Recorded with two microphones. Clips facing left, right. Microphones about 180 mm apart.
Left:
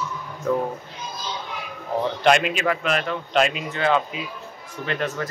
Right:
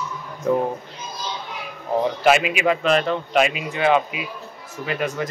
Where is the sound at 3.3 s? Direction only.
5° right (ahead or behind).